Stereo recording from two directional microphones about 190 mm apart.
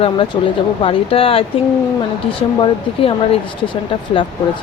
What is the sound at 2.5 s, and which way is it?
Speech, 25° left (ahead or behind).